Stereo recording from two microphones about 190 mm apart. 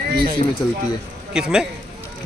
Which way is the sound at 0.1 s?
55° right (ahead or behind).